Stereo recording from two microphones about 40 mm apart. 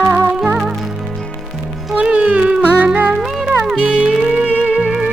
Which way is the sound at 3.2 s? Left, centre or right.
Centre.